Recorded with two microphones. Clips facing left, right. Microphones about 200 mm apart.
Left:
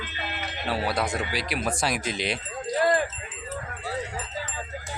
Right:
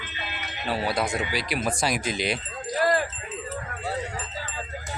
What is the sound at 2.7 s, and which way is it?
Jingle bell, 20° left (ahead or behind).